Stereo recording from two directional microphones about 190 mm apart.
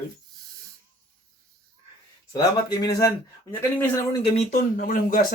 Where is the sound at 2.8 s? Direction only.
20° left (ahead or behind).